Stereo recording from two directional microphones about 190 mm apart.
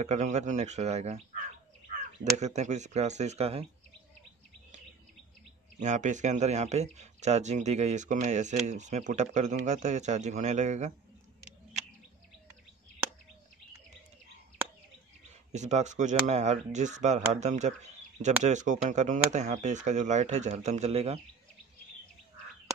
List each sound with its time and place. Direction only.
0.0 s speech: 40° right (ahead or behind)
2.3 s speech: 35° right (ahead or behind)
5.8 s speech: 40° right (ahead or behind)
15.5 s speech: 40° right (ahead or behind)